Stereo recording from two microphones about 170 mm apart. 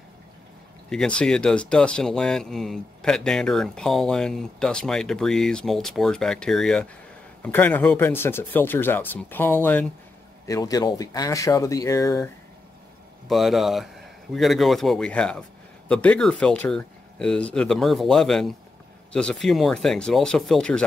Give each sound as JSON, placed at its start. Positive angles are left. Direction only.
{"t": 0.8, "sound": "speech", "side_deg": 5}
{"t": 10.4, "sound": "speech", "side_deg": 20}
{"t": 13.3, "sound": "speech", "side_deg": 0}